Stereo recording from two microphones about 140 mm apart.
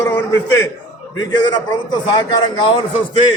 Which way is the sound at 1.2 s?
30° left (ahead or behind).